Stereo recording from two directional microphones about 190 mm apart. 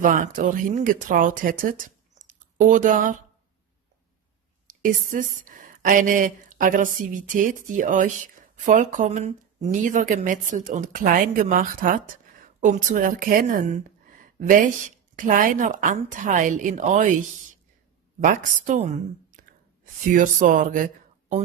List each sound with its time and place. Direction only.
0.0 s speech: 45° right (ahead or behind)
4.6 s a woman's voice: 45° right (ahead or behind)
18.2 s a woman's voice: 40° right (ahead or behind)